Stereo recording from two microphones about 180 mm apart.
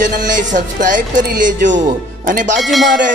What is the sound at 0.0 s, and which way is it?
A man's voice, 45° right (ahead or behind).